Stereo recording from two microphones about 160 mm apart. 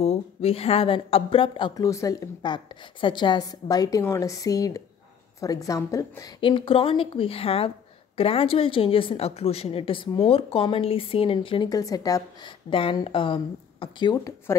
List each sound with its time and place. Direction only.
0.0 s a woman's voice: 40° left (ahead or behind)
1.8 s a woman's voice: 20° left (ahead or behind)
6.4 s a woman's voice: 30° left (ahead or behind)